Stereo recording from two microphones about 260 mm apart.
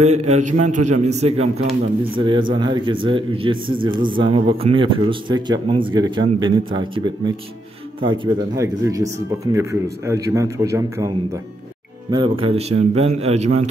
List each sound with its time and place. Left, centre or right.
0.0 s speech: right